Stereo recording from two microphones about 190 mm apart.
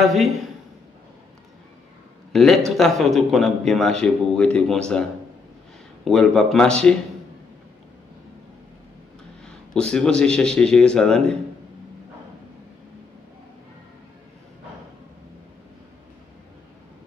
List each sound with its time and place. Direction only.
0.0 s speech: centre (ahead or behind)
2.3 s speech: centre (ahead or behind)
6.0 s speech: centre (ahead or behind)
9.4 s speech: 5° left (ahead or behind)